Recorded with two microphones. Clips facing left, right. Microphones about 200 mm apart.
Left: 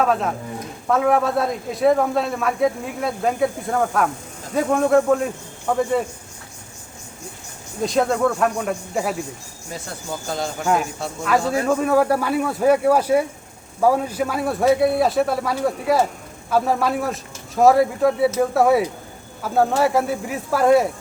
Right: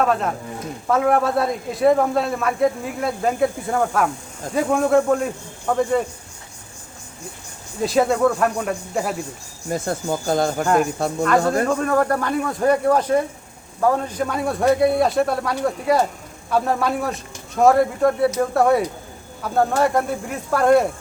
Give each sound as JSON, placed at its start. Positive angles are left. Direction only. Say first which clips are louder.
{"t": 0.0, "sound": "a man's voice", "louder": "even", "side_deg": 0}
{"t": 7.8, "sound": "a man's voice", "louder": "right 2 dB", "side_deg": 0}
{"t": 9.6, "sound": "speech", "louder": "right 8 dB", "side_deg": -50}
{"t": 11.6, "sound": "a man's voice", "louder": "left 1 dB", "side_deg": 5}